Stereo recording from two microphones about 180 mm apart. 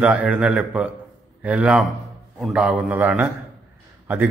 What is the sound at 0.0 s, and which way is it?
A man's voice, 10° right (ahead or behind).